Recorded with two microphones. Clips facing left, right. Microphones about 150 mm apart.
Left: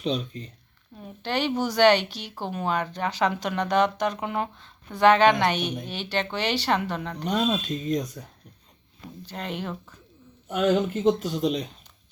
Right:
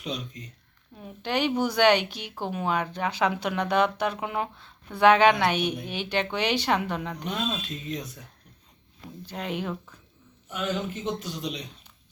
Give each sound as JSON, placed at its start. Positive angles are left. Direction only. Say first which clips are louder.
{"t": 0.0, "sound": "speech", "louder": "left 6 dB", "side_deg": 30}
{"t": 0.9, "sound": "speech", "louder": "even", "side_deg": -10}
{"t": 7.3, "sound": "speech", "louder": "left 8 dB", "side_deg": 35}
{"t": 9.2, "sound": "speech", "louder": "right 1 dB", "side_deg": -10}
{"t": 10.5, "sound": "speech", "louder": "left 8 dB", "side_deg": 50}